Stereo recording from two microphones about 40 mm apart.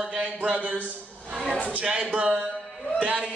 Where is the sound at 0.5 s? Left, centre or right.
Right.